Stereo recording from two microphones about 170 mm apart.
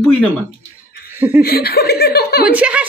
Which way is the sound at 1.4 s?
65° left (ahead or behind).